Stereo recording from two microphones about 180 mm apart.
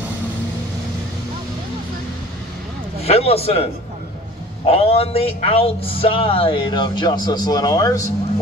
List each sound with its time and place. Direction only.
3.0 s a man's voice: 35° left (ahead or behind)
4.6 s a man's voice: 35° left (ahead or behind)